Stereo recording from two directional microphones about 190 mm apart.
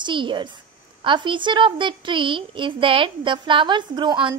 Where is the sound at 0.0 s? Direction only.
25° right (ahead or behind).